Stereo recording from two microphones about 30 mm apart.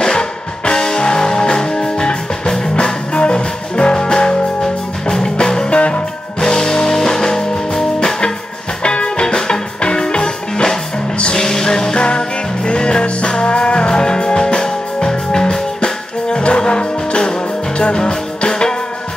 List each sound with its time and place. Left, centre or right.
0.0 s music: left
5.1 s music: centre
5.7 s music: left
6.4 s music: left
8.8 s music: left
12.0 s music: left